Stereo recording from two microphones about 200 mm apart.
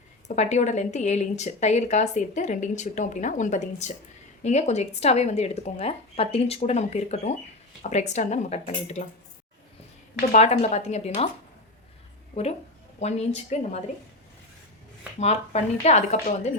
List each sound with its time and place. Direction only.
0.3 s speech: 35° left (ahead or behind)
10.2 s speech: 35° left (ahead or behind)
13.0 s speech: 35° left (ahead or behind)
15.2 s speech: 35° left (ahead or behind)